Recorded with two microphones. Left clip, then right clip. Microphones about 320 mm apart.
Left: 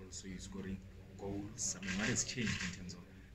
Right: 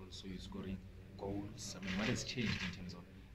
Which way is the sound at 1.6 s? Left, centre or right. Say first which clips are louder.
Left 3 dB; centre.